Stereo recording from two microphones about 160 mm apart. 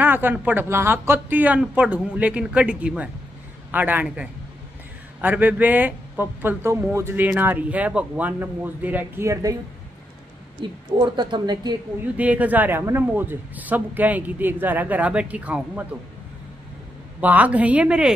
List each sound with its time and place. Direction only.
0.0 s speech: 10° right (ahead or behind)
10.6 s a woman's voice: 30° right (ahead or behind)
12.2 s speech: 10° right (ahead or behind)
17.2 s speech: 10° right (ahead or behind)